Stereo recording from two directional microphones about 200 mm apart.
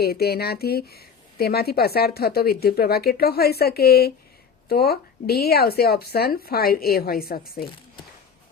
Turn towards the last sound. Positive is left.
turn(degrees=50)  # may be behind; listen again after turning